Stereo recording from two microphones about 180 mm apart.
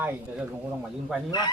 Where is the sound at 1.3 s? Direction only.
25° left (ahead or behind).